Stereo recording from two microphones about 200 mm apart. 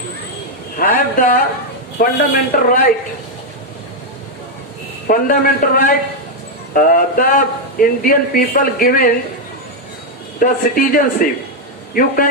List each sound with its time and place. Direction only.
0.8 s speech: 45° left (ahead or behind)
5.0 s speech: 45° left (ahead or behind)
10.4 s speech: 45° left (ahead or behind)